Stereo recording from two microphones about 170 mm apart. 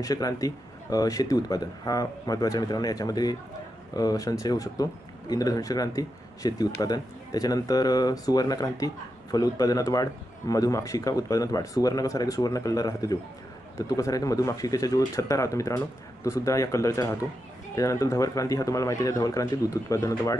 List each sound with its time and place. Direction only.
0.0 s speech: 20° left (ahead or behind)